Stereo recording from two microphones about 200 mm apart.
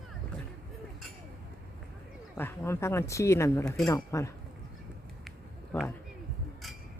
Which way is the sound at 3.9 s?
15° left (ahead or behind).